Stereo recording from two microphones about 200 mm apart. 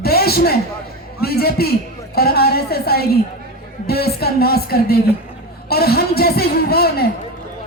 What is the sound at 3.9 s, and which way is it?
Music, 50° left (ahead or behind).